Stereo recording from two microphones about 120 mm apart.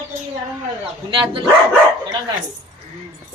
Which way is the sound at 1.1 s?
45° right (ahead or behind).